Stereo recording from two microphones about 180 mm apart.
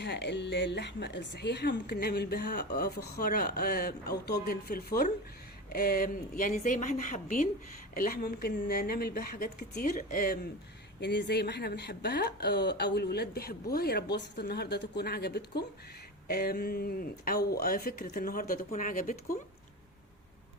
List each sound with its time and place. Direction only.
0.0 s speech: 70° left (ahead or behind); by 10.4 s 50° left (ahead or behind)
11.0 s speech: 70° left (ahead or behind); by 19.4 s 50° left (ahead or behind)